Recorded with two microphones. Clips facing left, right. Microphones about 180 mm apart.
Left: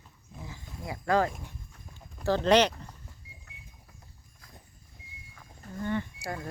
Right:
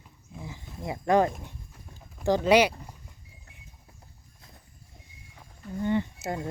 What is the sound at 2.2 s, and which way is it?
Speech, 10° right (ahead or behind).